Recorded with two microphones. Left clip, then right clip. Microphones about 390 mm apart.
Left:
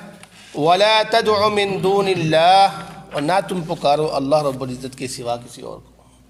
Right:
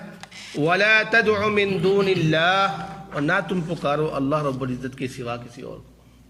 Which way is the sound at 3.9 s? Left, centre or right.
Centre.